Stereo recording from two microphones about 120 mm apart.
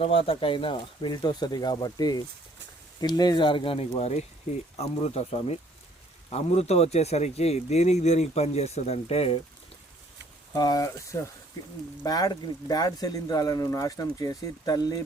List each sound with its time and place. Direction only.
0.0 s speech: 50° left (ahead or behind)
10.5 s speech: 30° left (ahead or behind)